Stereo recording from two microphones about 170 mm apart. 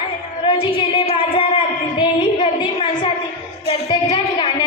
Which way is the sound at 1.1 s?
30° left (ahead or behind).